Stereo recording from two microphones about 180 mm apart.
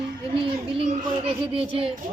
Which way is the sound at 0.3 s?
30° right (ahead or behind).